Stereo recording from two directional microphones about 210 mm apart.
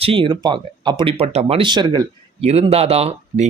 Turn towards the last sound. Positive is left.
turn(degrees=-30)  # may be behind; listen again after turning